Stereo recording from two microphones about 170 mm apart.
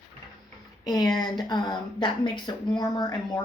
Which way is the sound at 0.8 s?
20° left (ahead or behind).